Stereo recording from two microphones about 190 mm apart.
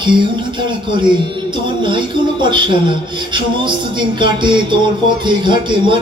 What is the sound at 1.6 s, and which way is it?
Speech, 25° right (ahead or behind).